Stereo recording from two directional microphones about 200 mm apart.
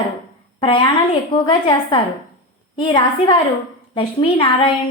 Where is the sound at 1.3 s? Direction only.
25° left (ahead or behind).